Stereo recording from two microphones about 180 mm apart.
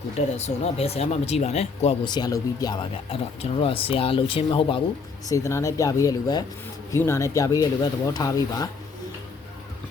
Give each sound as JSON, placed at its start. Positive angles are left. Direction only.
{"t": 0.3, "sound": "speech", "side_deg": 35}
{"t": 2.0, "sound": "speech", "side_deg": 20}
{"t": 5.3, "sound": "speech", "side_deg": 15}